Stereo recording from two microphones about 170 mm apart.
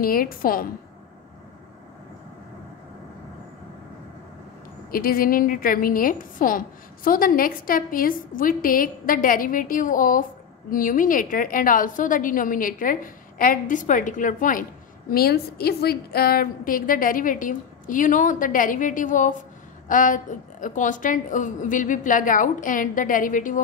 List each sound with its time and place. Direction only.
0.0 s a woman's voice: 55° left (ahead or behind)
4.9 s a woman's voice: 55° left (ahead or behind)